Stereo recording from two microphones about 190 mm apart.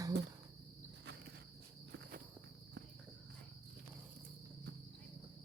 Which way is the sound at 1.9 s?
55° right (ahead or behind).